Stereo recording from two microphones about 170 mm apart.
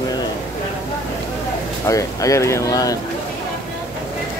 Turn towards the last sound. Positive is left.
turn(degrees=20)  # may be behind; listen again after turning